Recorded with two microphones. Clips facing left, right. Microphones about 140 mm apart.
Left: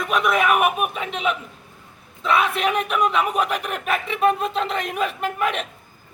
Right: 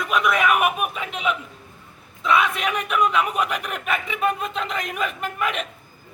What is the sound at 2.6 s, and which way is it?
Speech, 35° left (ahead or behind).